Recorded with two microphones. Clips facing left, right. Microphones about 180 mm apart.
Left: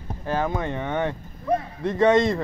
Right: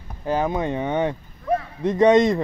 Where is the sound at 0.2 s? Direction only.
15° right (ahead or behind).